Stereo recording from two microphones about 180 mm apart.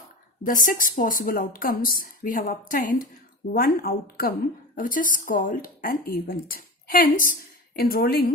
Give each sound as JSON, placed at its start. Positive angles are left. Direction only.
{"t": 0.4, "sound": "a woman's voice", "side_deg": 50}